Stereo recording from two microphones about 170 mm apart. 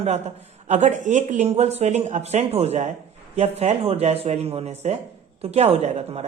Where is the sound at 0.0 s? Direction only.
40° right (ahead or behind).